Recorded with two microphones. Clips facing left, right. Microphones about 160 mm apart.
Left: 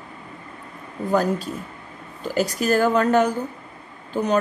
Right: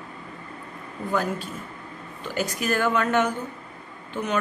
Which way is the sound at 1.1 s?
40° left (ahead or behind).